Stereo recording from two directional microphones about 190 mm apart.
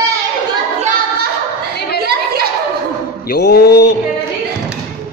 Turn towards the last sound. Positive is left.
turn(degrees=60)  # may be behind; listen again after turning